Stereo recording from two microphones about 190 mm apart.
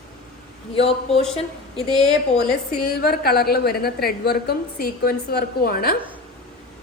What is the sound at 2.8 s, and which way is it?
A woman's voice, 55° left (ahead or behind).